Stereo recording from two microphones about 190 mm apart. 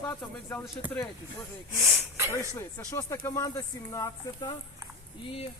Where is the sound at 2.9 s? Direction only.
15° left (ahead or behind).